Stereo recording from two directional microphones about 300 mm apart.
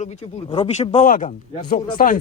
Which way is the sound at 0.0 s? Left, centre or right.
Left.